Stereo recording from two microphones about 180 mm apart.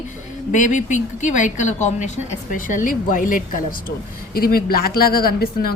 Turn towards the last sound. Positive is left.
turn(degrees=55)  # may be behind; listen again after turning